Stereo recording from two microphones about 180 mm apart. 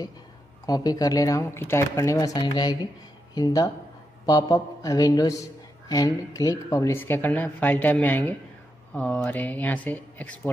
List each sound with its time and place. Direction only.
0.7 s a man's voice: 20° left (ahead or behind)